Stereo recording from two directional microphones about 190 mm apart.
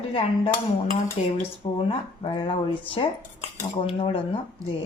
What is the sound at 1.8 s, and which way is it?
Speech, 25° left (ahead or behind).